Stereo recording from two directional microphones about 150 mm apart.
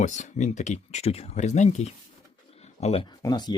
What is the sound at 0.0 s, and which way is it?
Speech, 55° left (ahead or behind).